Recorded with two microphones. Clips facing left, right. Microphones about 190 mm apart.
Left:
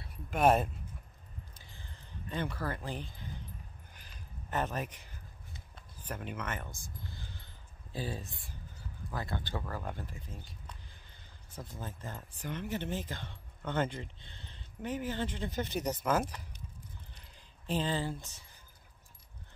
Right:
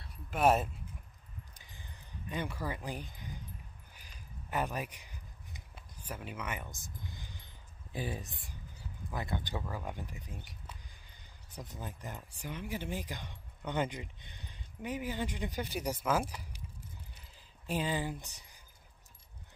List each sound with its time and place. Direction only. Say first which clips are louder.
0.0 s speech: left 1 dB; 5° right (ahead or behind)
1.5 s a sound: left 1 dB; 15° right (ahead or behind)
7.9 s speech: even; 20° right (ahead or behind)
11.5 s speech: left 1 dB; 20° right (ahead or behind)
17.6 s speech: left 1 dB; 10° right (ahead or behind)